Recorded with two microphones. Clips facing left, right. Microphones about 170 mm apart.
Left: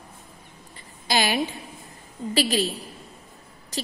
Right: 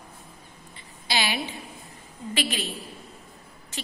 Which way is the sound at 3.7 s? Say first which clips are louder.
Left 6 dB; 35° left (ahead or behind).